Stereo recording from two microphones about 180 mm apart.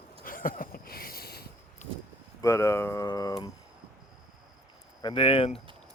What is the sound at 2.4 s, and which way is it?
Speech, 15° left (ahead or behind).